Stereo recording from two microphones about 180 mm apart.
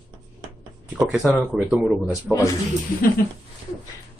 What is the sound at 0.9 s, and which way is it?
Speech, centre (ahead or behind).